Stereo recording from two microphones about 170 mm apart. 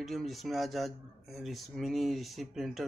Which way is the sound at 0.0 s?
Centre (ahead or behind).